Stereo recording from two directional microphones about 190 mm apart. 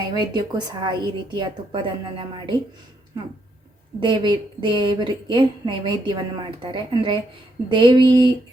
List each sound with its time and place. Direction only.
0.3 s a woman's voice: 25° right (ahead or behind)
4.0 s a woman's voice: 25° right (ahead or behind)